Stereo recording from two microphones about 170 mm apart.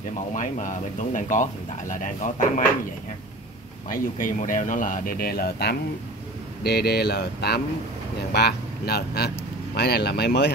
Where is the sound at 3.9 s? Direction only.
50° left (ahead or behind).